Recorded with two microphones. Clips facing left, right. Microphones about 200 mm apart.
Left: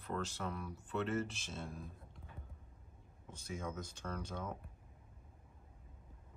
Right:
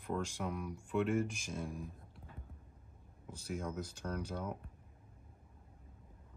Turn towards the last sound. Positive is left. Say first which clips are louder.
# right 3 dB
turn(degrees=-10)  # may be behind; listen again after turning